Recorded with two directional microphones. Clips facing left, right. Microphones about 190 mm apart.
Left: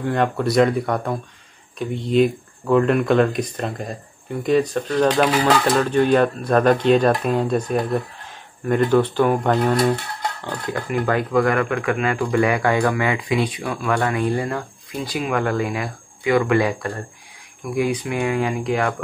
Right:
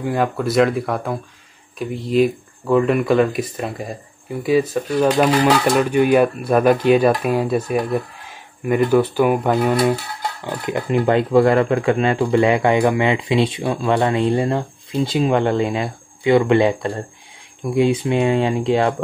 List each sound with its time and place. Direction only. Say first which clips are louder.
0.0 s speech: even; centre (ahead or behind)
10.4 s speech: right 6 dB; 15° right (ahead or behind)